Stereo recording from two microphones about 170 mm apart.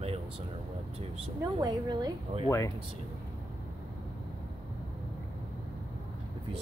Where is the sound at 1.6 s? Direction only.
25° right (ahead or behind).